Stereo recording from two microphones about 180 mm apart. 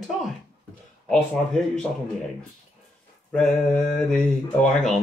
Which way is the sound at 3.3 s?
5° left (ahead or behind).